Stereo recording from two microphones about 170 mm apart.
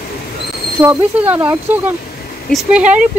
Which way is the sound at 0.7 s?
10° right (ahead or behind).